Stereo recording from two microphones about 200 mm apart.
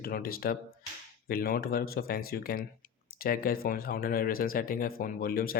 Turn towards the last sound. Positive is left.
turn(degrees=45)  # may be behind; listen again after turning